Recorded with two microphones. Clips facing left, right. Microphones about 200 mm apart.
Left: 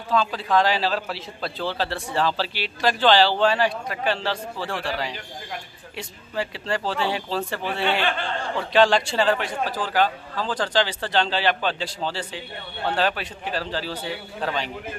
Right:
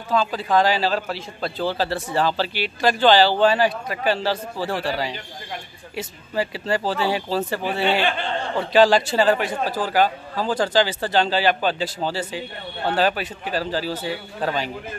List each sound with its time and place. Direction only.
0.1 s speech: 5° right (ahead or behind)
8.0 s speech: 20° right (ahead or behind)
8.7 s a man's voice: 5° right (ahead or behind)